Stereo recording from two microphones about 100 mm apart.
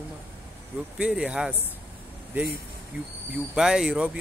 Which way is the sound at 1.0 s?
10° right (ahead or behind).